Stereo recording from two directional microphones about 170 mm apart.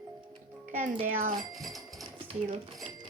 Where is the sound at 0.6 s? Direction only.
45° right (ahead or behind).